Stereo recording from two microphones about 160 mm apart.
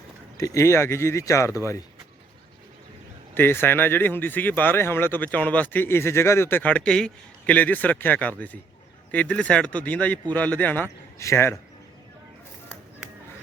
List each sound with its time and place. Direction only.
0.3 s speech: 20° left (ahead or behind)
3.3 s speech: 15° left (ahead or behind)